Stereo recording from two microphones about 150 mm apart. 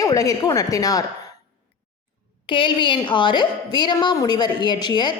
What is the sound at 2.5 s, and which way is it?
A woman's voice, 35° left (ahead or behind).